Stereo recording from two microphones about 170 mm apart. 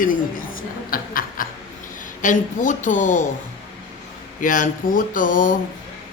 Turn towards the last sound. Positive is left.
turn(degrees=55)  # may be behind; listen again after turning